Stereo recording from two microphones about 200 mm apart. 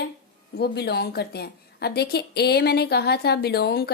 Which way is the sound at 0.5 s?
55° left (ahead or behind).